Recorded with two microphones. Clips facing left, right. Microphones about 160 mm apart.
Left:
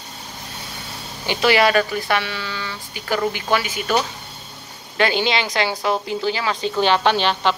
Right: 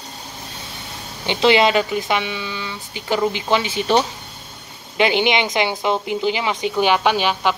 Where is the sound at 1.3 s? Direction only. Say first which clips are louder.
Right 2 dB; 20° right (ahead or behind).